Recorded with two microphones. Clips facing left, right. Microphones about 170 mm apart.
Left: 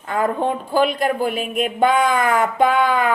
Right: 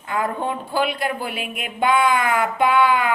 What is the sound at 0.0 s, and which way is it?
Speech, 40° left (ahead or behind).